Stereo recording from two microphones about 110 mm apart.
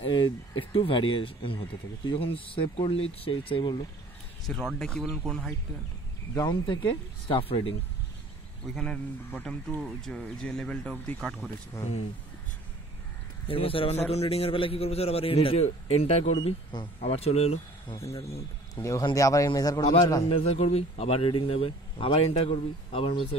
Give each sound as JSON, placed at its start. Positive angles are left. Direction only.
{"t": 0.0, "sound": "speech", "side_deg": 50}
{"t": 4.5, "sound": "speech", "side_deg": 5}
{"t": 6.3, "sound": "speech", "side_deg": 45}
{"t": 8.7, "sound": "speech", "side_deg": 5}
{"t": 13.5, "sound": "speech", "side_deg": 55}
{"t": 17.9, "sound": "a man's voice", "side_deg": 25}
{"t": 20.2, "sound": "speech", "side_deg": 60}